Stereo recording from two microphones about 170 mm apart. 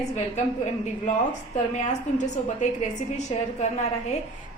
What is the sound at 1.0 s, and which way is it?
A woman's voice, 45° left (ahead or behind).